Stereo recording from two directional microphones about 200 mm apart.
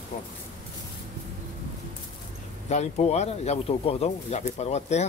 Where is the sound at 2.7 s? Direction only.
35° left (ahead or behind).